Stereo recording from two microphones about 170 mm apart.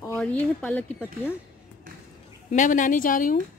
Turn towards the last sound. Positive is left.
turn(degrees=55)  # may be behind; listen again after turning